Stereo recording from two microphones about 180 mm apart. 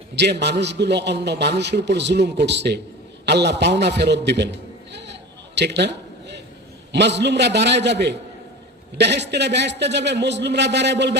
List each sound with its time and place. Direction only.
0.2 s a man's voice: 70° right (ahead or behind)
5.5 s a sound: 70° right (ahead or behind)
6.9 s a man's voice: 70° right (ahead or behind)